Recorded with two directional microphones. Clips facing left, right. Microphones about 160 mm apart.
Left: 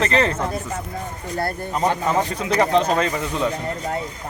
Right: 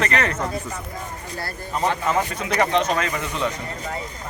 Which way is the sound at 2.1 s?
30° left (ahead or behind).